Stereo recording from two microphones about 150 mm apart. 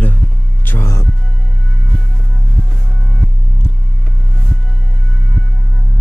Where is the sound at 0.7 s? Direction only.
20° left (ahead or behind).